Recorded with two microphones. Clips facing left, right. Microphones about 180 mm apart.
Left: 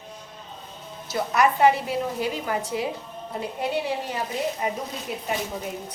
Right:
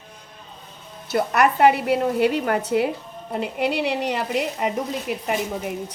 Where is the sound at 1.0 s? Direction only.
60° right (ahead or behind).